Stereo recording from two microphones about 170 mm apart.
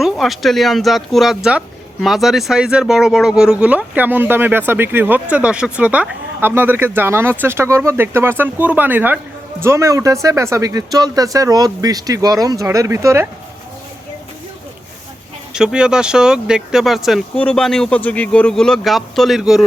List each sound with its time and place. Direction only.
0.0 s speech: centre (ahead or behind); by 13.2 s 15° right (ahead or behind)
15.5 s speech: 5° right (ahead or behind)